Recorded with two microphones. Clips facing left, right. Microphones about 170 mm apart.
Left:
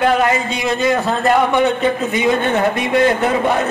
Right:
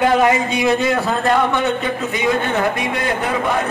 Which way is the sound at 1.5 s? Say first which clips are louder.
Left 4 dB; 15° left (ahead or behind).